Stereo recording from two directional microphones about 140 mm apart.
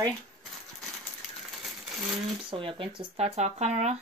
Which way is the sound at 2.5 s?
40° right (ahead or behind).